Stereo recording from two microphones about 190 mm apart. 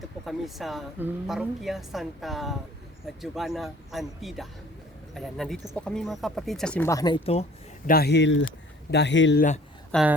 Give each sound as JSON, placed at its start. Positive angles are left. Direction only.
{"t": 0.3, "sound": "a woman's voice", "side_deg": 0}
{"t": 7.9, "sound": "speech", "side_deg": 55}
{"t": 9.9, "sound": "a woman's voice", "side_deg": -5}